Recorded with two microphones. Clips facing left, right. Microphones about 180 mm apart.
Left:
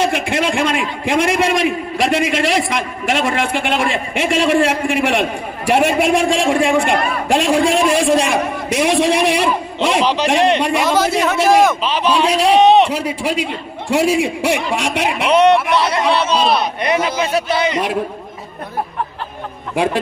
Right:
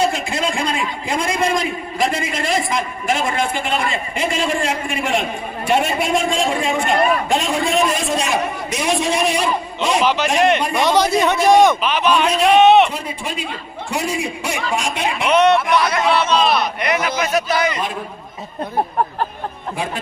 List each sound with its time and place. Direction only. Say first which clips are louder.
0.0 s a man's voice: left 2 dB; 75° left (ahead or behind)
10.0 s a man's voice: even; 30° left (ahead or behind)
10.8 s a man's voice: even; 5° left (ahead or behind)
11.8 s a man's voice: left 1 dB; 30° left (ahead or behind)
12.9 s a man's voice: left 7 dB; 80° left
14.8 s speech: left 3 dB; 70° left (ahead or behind)
15.2 s a man's voice: left 2 dB; 30° left (ahead or behind)
19.7 s a man's voice: left 9 dB; 80° left